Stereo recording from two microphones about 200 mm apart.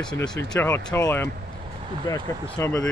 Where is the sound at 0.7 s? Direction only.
15° left (ahead or behind).